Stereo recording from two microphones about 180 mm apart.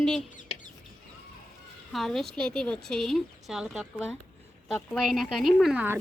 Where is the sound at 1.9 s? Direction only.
Centre (ahead or behind).